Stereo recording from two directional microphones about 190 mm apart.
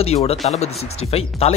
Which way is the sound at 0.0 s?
30° left (ahead or behind).